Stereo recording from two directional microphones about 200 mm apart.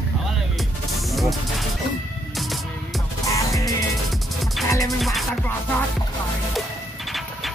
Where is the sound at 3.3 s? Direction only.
15° left (ahead or behind).